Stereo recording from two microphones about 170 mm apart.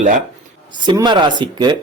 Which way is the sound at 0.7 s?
25° right (ahead or behind).